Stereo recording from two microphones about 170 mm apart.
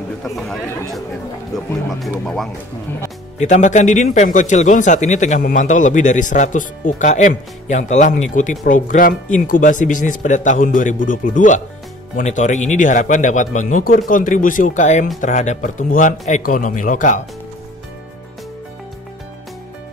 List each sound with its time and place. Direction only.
1.5 s speech: centre (ahead or behind)
3.3 s speech: 45° left (ahead or behind)